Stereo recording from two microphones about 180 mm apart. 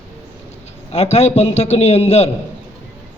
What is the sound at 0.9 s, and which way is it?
A man's voice, 35° left (ahead or behind).